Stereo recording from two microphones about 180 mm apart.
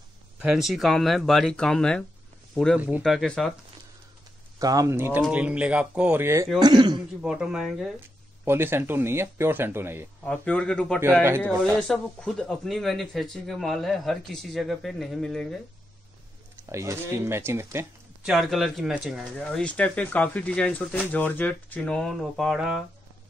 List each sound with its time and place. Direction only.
0.4 s speech: 5° right (ahead or behind)
4.6 s speech: 20° right (ahead or behind)
7.2 s speech: 5° right (ahead or behind)
8.5 s speech: 15° right (ahead or behind)
10.2 s speech: 5° left (ahead or behind)
16.6 s speech: 15° right (ahead or behind)
18.3 s speech: centre (ahead or behind)